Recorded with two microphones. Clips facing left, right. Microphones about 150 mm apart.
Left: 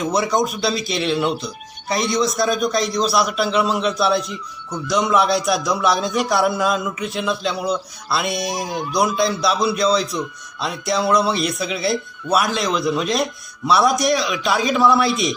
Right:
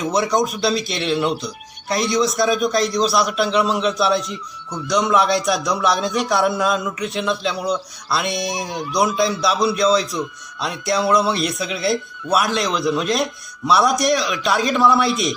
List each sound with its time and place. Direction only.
0.0 s speech: centre (ahead or behind)